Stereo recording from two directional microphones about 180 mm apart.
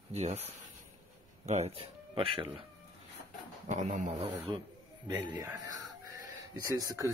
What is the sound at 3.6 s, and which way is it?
Speech, 40° right (ahead or behind).